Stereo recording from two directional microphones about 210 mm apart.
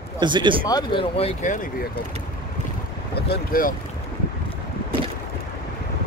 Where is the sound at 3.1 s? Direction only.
45° left (ahead or behind).